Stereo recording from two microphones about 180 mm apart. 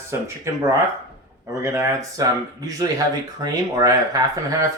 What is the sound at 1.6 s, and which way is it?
Speech, 15° right (ahead or behind).